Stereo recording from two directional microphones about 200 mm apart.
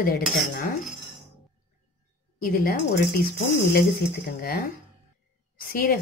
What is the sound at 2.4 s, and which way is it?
Speech, 50° left (ahead or behind).